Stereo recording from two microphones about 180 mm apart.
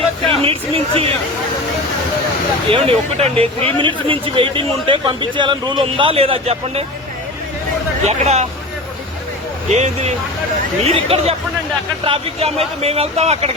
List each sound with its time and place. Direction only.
0.3 s speech: 30° right (ahead or behind)
2.6 s speech: 30° right (ahead or behind)
8.0 s speech: 40° right (ahead or behind)
9.6 s speech: 40° right (ahead or behind)